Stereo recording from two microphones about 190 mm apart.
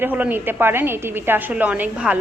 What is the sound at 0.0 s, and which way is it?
A woman's voice, 10° right (ahead or behind).